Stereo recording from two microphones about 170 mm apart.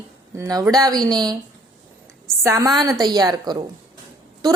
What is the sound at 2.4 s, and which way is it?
A woman's voice, 15° right (ahead or behind).